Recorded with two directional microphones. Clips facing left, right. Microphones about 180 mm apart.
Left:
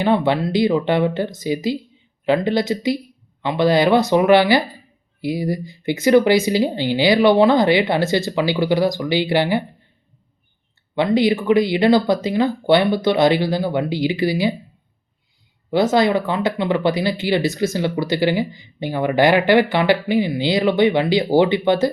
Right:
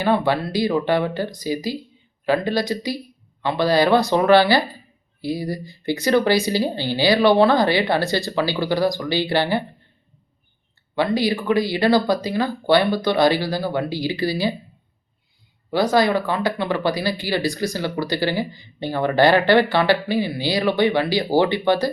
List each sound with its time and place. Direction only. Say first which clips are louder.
0.0 s speech: left 2 dB; 20° left (ahead or behind)
10.9 s speech: left 4 dB; 20° left (ahead or behind)
15.7 s speech: left 2 dB; 20° left (ahead or behind)